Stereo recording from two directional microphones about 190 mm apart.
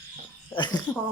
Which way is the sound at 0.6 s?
25° left (ahead or behind).